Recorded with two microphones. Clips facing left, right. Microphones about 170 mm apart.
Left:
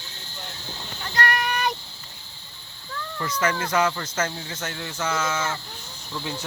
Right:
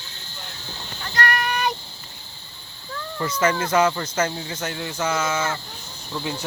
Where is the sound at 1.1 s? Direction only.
25° left (ahead or behind).